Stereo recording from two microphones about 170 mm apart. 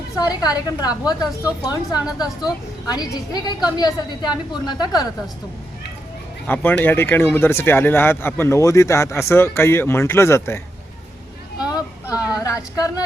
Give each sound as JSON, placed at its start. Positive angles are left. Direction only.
{"t": 0.2, "sound": "a woman's voice", "side_deg": 20}
{"t": 6.5, "sound": "speech", "side_deg": 10}
{"t": 11.7, "sound": "a sound", "side_deg": 20}